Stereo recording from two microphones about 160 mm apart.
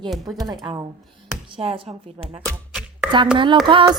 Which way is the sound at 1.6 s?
40° right (ahead or behind).